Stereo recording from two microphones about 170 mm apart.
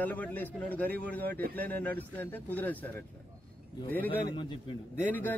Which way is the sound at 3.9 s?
10° left (ahead or behind).